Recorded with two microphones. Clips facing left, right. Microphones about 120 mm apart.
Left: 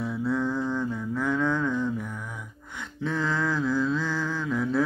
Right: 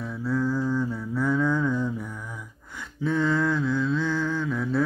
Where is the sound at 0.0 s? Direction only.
Centre (ahead or behind).